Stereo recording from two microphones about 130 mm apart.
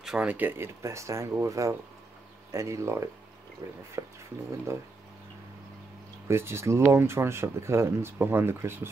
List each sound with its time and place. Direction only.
0.0 s speech: 5° right (ahead or behind)
6.2 s speech: 20° right (ahead or behind)